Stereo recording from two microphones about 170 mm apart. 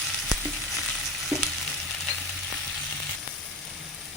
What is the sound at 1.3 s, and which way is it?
Frying, 5° right (ahead or behind).